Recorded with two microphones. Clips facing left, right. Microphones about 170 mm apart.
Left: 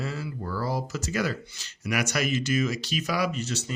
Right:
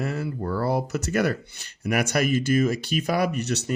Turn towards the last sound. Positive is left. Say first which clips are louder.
# right 4 dB
turn(degrees=-65)  # may be behind; listen again after turning